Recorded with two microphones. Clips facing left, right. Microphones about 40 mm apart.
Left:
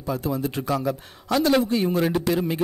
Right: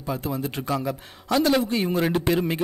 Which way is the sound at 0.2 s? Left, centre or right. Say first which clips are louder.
Left 2 dB; right.